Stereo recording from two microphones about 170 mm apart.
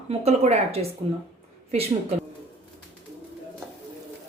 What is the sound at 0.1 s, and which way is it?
Speech, 40° right (ahead or behind).